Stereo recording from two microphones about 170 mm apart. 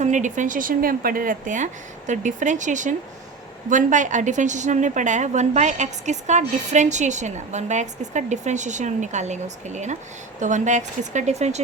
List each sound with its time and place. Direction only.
0.0 s a woman's voice: 45° right (ahead or behind)